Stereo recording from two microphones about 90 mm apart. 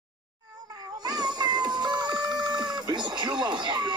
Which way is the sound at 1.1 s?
50° right (ahead or behind).